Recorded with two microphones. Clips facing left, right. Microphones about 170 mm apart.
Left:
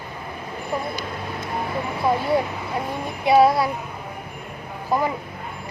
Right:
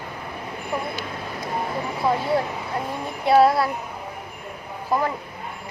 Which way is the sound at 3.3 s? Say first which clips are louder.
Left 1 dB; centre (ahead or behind).